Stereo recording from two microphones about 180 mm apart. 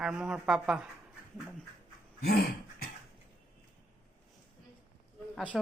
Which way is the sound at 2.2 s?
55° left (ahead or behind).